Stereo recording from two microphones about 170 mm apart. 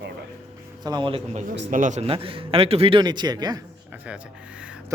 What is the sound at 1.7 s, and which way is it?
A man's voice, 45° right (ahead or behind).